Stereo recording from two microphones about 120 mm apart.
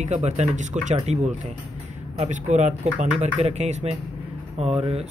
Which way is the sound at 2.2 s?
80° right.